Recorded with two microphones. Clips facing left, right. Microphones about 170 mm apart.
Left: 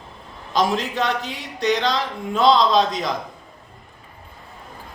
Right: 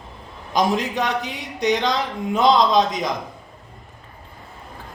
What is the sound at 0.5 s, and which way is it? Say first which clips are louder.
A man's voice: right 1 dB; 15° right (ahead or behind).